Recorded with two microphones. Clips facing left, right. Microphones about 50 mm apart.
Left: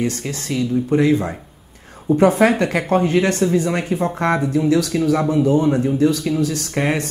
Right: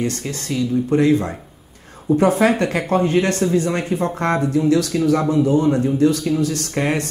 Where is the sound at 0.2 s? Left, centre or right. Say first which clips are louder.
Even; left.